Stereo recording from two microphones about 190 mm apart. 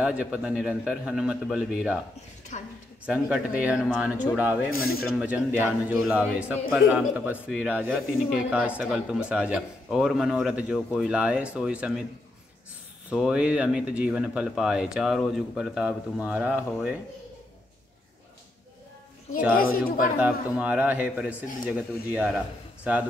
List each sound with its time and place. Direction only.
0.0 s a man's voice: 5° right (ahead or behind)
2.5 s a woman's voice: 35° left (ahead or behind)
3.1 s a man's voice: 5° right (ahead or behind)
13.1 s a man's voice: 5° right (ahead or behind)
19.5 s speech: 50° left (ahead or behind)
20.2 s a man's voice: 5° right (ahead or behind)